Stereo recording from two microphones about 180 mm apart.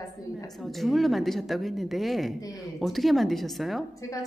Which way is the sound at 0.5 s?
Centre (ahead or behind).